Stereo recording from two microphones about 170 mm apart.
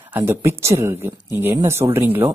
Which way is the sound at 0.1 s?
15° right (ahead or behind).